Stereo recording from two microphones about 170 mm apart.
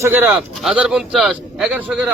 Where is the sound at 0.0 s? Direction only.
10° right (ahead or behind).